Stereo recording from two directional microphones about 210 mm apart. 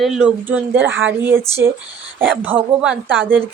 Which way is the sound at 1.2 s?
10° right (ahead or behind).